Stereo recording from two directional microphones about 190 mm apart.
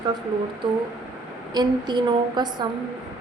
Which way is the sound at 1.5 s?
20° right (ahead or behind).